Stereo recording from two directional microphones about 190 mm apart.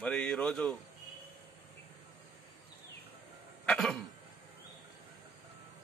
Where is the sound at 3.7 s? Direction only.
5° left (ahead or behind).